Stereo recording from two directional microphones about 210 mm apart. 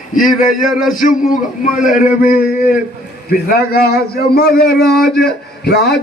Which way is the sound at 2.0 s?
5° right (ahead or behind).